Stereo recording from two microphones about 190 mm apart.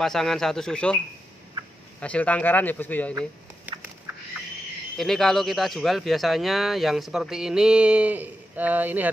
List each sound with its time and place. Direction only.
0.0 s speech: centre (ahead or behind)
4.9 s speech: centre (ahead or behind)